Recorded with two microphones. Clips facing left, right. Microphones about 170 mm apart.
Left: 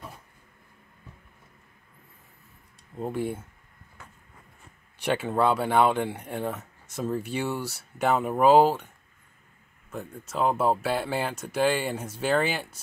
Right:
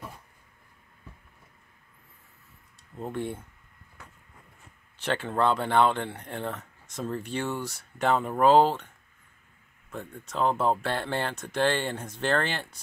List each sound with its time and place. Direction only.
3.0 s speech: 10° left (ahead or behind)
4.9 s speech: 10° left (ahead or behind)